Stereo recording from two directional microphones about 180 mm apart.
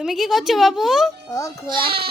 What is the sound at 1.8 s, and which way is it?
Speech, 60° right (ahead or behind).